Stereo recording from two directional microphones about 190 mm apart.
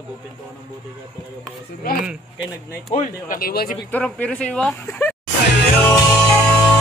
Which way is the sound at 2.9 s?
45° left (ahead or behind).